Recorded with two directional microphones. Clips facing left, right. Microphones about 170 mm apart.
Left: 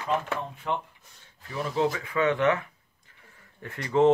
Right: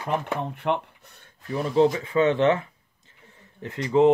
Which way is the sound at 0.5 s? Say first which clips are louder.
Right 5 dB; 65° right (ahead or behind).